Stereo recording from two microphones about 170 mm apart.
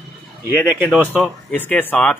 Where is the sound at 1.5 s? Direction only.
10° left (ahead or behind).